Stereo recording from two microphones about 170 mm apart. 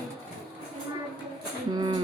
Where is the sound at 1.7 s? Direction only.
25° right (ahead or behind).